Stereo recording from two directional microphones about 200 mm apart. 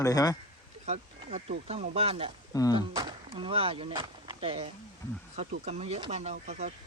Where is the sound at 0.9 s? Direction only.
30° right (ahead or behind).